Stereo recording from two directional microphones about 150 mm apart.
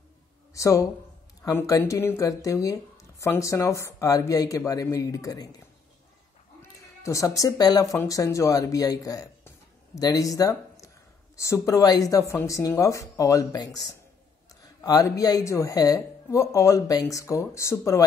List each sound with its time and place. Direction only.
0.5 s a woman's voice: 20° left (ahead or behind)
7.0 s speech: 20° left (ahead or behind)